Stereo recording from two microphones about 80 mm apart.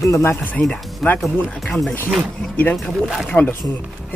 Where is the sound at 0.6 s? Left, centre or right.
Left.